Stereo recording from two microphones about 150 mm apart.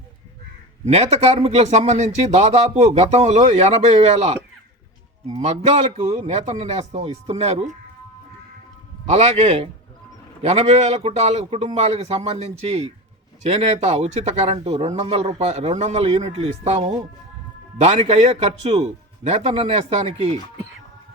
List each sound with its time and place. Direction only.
0.9 s speech: 45° right (ahead or behind)
5.4 s speech: 50° right (ahead or behind)
10.4 s speech: 50° right (ahead or behind)